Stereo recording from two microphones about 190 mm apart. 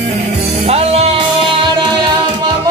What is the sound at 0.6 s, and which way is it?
Music, 30° right (ahead or behind).